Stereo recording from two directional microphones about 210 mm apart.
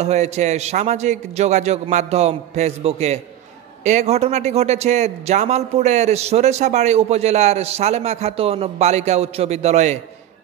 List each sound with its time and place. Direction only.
0.0 s a man's voice: 30° right (ahead or behind)